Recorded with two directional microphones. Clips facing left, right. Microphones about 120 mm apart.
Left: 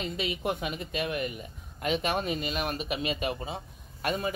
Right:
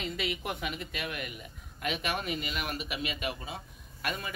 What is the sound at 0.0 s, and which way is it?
Speech, 25° left (ahead or behind).